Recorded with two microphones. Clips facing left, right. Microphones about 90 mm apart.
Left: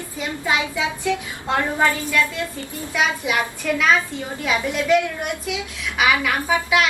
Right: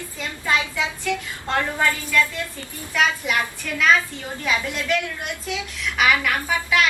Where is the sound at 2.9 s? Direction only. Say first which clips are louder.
Even; 10° left (ahead or behind).